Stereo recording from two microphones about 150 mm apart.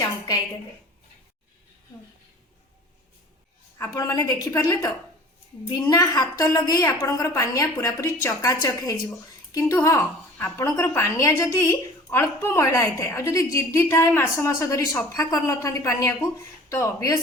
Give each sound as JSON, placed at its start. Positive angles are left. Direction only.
{"t": 3.8, "sound": "a woman's voice", "side_deg": 20}